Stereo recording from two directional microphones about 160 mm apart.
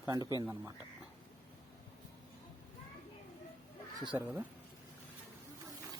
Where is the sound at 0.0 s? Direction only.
20° right (ahead or behind).